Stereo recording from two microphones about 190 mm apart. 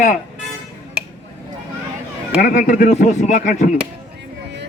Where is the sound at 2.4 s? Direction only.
40° left (ahead or behind).